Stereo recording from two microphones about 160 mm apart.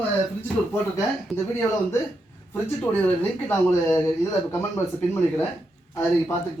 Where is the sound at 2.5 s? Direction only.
10° left (ahead or behind).